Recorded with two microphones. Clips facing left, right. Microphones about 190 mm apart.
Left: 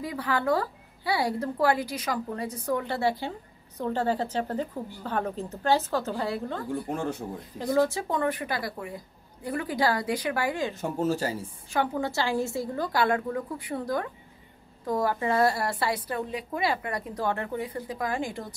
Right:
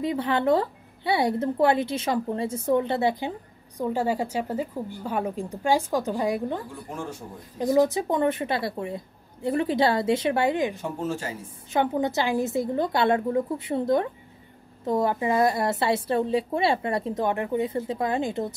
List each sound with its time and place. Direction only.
0.0 s speech: 25° right (ahead or behind)
6.9 s speech: 60° left (ahead or behind)
7.5 s a woman's voice: 15° right (ahead or behind)
10.8 s speech: 40° left (ahead or behind)
11.7 s a woman's voice: 20° right (ahead or behind)